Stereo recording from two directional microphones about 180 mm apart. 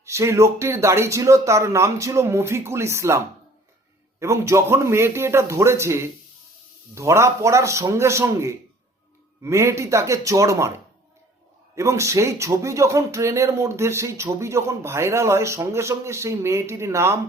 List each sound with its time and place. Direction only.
0.0 s speech: 15° right (ahead or behind)
11.7 s speech: 15° right (ahead or behind)